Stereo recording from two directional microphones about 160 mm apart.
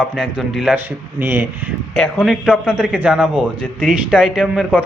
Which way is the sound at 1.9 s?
Centre (ahead or behind).